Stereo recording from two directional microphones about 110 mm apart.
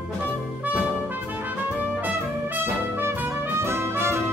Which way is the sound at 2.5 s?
20° right (ahead or behind).